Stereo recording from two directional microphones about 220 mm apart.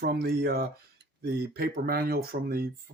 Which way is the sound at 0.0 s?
45° right (ahead or behind).